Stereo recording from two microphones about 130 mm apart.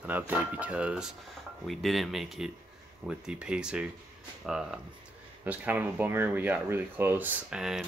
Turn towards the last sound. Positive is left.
turn(degrees=-5)  # may be behind; listen again after turning